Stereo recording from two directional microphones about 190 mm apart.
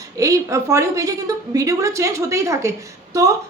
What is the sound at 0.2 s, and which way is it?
A woman's voice, 15° right (ahead or behind).